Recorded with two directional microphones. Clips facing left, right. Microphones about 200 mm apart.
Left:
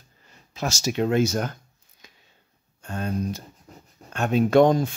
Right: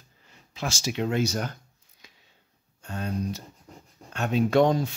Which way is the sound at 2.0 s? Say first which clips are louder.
Left 2 dB; 50° left (ahead or behind).